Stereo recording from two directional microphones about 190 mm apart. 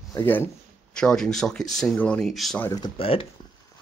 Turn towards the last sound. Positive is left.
turn(degrees=30)  # may be behind; listen again after turning